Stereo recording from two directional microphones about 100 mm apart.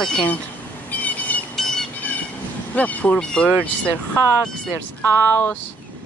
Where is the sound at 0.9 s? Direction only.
15° left (ahead or behind).